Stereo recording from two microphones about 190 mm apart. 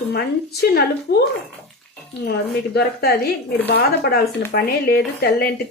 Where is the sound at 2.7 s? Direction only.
55° left (ahead or behind).